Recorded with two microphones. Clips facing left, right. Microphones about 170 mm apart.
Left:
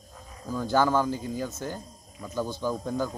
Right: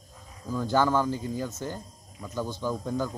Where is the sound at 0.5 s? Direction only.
5° left (ahead or behind).